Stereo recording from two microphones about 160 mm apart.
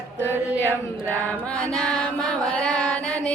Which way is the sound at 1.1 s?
10° left (ahead or behind).